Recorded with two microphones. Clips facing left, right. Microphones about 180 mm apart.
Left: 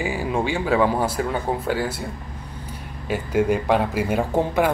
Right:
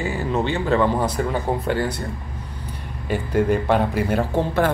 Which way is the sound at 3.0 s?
5° left (ahead or behind).